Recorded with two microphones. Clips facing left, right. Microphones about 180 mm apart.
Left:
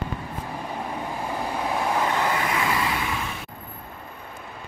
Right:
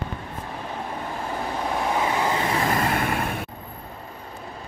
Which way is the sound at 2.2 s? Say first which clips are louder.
Right 1 dB; 20° right (ahead or behind).